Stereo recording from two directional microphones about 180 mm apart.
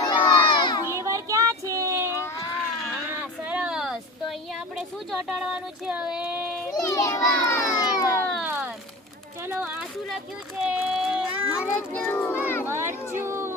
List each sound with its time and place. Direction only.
0.1 s crowd: 25° left (ahead or behind)
0.9 s child singing: 15° right (ahead or behind)
3.1 s a sound: 5° right (ahead or behind)
5.4 s child singing: 5° right (ahead or behind)
6.7 s a child's voice: 20° left (ahead or behind)
8.4 s a sound: 10° right (ahead or behind)
9.5 s speech: 10° right (ahead or behind)
10.6 s child singing: 5° right (ahead or behind)
11.9 s a child's voice: 10° left (ahead or behind)
12.6 s speech: 15° right (ahead or behind)
13.2 s a sound: 15° right (ahead or behind)